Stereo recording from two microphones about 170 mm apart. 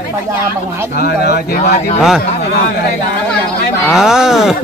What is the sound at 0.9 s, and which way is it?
Speech, 65° left (ahead or behind).